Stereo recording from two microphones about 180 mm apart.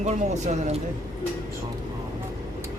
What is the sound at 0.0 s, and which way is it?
Speech, 40° right (ahead or behind).